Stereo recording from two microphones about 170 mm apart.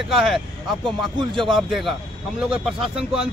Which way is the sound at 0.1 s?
Centre (ahead or behind).